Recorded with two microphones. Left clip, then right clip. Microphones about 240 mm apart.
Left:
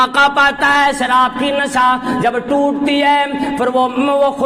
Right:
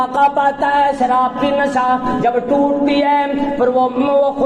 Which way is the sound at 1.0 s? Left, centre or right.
Left.